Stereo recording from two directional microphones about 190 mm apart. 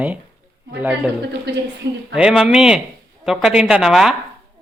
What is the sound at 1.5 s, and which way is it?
Speech, 60° right (ahead or behind).